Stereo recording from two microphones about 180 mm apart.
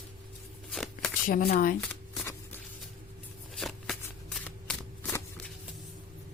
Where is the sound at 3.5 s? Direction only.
Centre (ahead or behind).